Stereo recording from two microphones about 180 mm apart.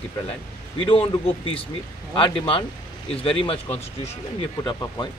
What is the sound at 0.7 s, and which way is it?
Speech, 30° left (ahead or behind).